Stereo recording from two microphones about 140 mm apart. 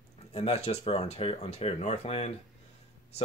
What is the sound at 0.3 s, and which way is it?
Speech, 50° left (ahead or behind).